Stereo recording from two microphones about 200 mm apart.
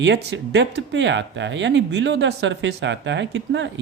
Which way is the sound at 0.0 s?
60° right (ahead or behind).